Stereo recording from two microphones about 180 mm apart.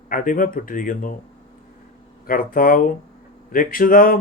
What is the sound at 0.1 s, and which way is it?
Speech, 50° left (ahead or behind).